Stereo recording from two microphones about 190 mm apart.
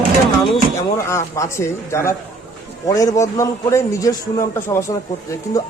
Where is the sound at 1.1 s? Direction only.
15° left (ahead or behind).